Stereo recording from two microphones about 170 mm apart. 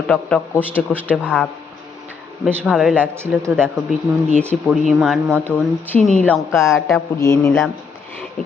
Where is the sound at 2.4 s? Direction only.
Centre (ahead or behind).